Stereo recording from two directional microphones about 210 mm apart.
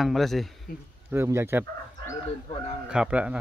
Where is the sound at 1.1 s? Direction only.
10° right (ahead or behind).